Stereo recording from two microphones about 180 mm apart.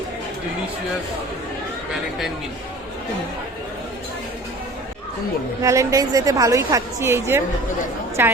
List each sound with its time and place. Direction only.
5.6 s a woman's voice: 15° right (ahead or behind)